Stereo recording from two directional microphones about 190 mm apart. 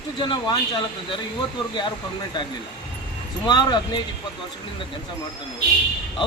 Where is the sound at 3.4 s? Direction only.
25° left (ahead or behind).